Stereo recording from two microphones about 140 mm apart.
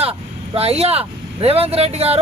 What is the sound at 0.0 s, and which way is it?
Speech, 45° right (ahead or behind).